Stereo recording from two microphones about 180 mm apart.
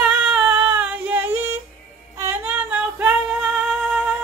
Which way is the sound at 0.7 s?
10° right (ahead or behind).